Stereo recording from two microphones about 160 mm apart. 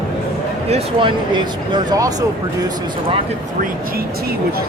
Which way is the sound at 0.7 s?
30° right (ahead or behind).